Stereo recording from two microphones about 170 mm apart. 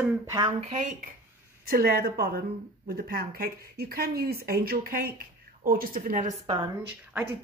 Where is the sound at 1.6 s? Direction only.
60° right (ahead or behind).